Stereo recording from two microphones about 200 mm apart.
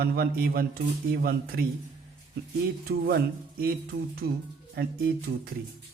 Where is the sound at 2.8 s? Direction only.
50° right (ahead or behind).